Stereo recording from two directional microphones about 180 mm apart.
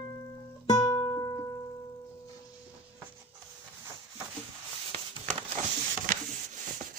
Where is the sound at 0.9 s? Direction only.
25° left (ahead or behind).